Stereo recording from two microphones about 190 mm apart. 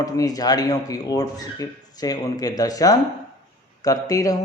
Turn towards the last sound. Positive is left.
turn(degrees=20)  # may be behind; listen again after turning